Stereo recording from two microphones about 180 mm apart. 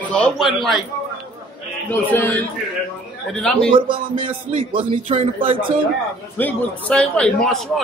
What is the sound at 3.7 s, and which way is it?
Speech, 30° right (ahead or behind).